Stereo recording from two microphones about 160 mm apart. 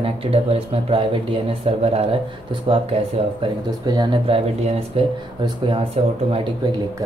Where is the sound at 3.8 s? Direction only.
25° right (ahead or behind).